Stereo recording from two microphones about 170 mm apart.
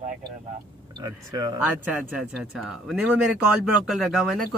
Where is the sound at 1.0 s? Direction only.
25° right (ahead or behind).